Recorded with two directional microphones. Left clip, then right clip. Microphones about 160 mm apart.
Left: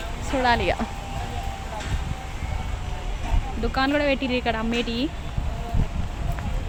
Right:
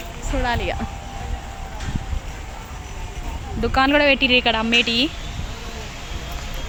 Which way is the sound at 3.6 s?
30° right (ahead or behind).